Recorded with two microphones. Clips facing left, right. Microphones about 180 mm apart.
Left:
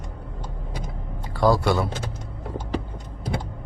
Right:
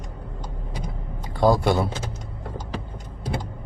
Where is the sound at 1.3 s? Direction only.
20° right (ahead or behind).